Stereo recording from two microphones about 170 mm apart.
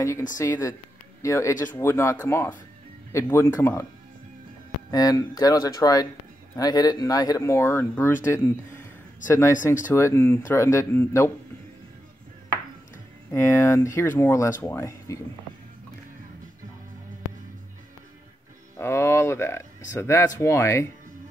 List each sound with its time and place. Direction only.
0.4 s speech: 20° left (ahead or behind)
4.9 s speech: 20° left (ahead or behind)
9.9 s speech: 15° left (ahead or behind)
13.3 s speech: 15° left (ahead or behind)
18.8 s speech: 15° left (ahead or behind)